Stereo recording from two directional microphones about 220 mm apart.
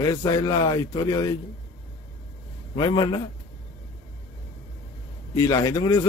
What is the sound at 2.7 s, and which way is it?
Speech, 20° left (ahead or behind).